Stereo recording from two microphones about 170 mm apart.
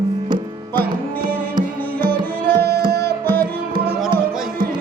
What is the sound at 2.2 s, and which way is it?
Tabla, 10° left (ahead or behind).